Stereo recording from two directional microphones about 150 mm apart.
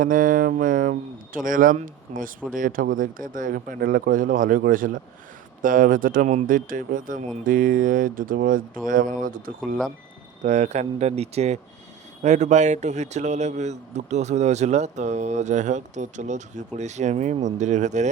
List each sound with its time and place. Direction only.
0.0 s speech: 65° right (ahead or behind)
10.4 s speech: 50° right (ahead or behind)